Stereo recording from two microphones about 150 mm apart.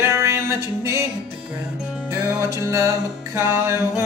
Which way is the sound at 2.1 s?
20° right (ahead or behind).